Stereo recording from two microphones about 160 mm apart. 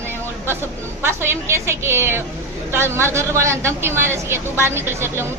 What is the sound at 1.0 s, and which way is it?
A woman's voice, 15° right (ahead or behind).